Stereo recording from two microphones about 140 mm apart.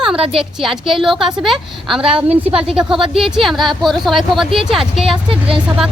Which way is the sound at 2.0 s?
40° right (ahead or behind).